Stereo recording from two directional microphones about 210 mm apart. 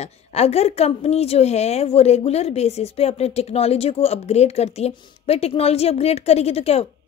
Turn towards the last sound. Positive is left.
turn(degrees=30)  # may be behind; listen again after turning